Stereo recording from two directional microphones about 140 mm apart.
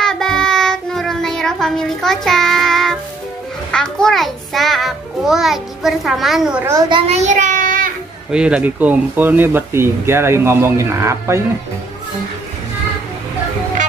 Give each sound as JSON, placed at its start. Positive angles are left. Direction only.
{"t": 0.0, "sound": "child singing", "side_deg": 5}
{"t": 3.7, "sound": "a child's voice", "side_deg": 5}
{"t": 6.6, "sound": "a child's voice", "side_deg": -20}
{"t": 7.1, "sound": "child singing", "side_deg": -55}
{"t": 8.3, "sound": "speech", "side_deg": -5}